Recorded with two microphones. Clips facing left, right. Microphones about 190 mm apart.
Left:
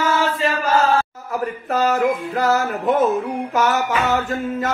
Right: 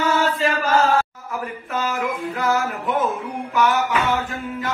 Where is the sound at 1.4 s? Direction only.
40° left (ahead or behind).